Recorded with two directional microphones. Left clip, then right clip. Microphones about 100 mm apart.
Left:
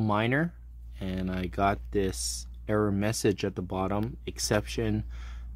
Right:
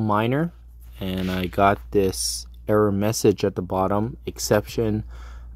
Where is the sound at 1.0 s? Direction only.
55° right (ahead or behind).